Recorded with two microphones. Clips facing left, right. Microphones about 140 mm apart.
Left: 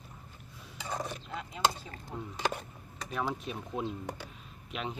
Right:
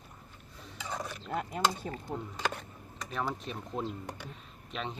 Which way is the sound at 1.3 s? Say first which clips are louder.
Right 1 dB; 50° right (ahead or behind).